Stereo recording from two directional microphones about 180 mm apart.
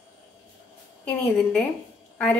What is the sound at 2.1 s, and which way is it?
Speech, 5° left (ahead or behind).